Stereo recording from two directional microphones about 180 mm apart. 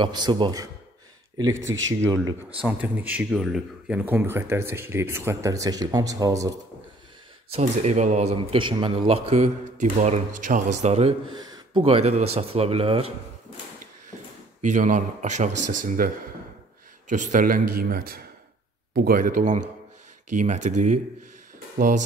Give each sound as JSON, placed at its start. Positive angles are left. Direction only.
{"t": 0.0, "sound": "speech", "side_deg": -25}
{"t": 1.9, "sound": "speech", "side_deg": -20}
{"t": 2.6, "sound": "speech", "side_deg": -10}
{"t": 7.5, "sound": "speech", "side_deg": -40}
{"t": 11.3, "sound": "speech", "side_deg": -20}
{"t": 14.6, "sound": "speech", "side_deg": -45}
{"t": 17.1, "sound": "speech", "side_deg": -45}